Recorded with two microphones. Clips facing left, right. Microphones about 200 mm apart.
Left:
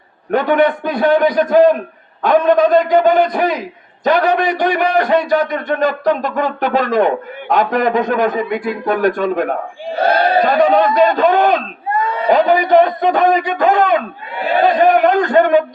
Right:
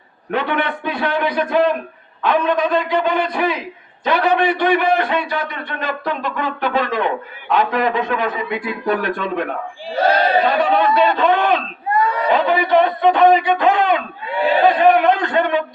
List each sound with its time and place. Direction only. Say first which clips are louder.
0.3 s a man's voice: left 7 dB; 45° left (ahead or behind)
10.1 s a sound: left 2 dB; 45° left (ahead or behind)
12.3 s a man's voice: left 6 dB; 40° left (ahead or behind)